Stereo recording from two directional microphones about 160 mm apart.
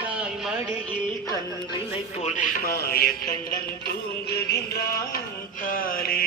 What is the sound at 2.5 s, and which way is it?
Music, 70° left (ahead or behind).